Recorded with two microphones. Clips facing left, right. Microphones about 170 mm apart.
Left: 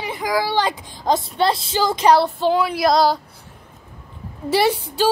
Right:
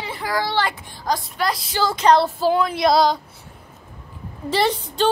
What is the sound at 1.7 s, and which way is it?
Speech, 15° left (ahead or behind).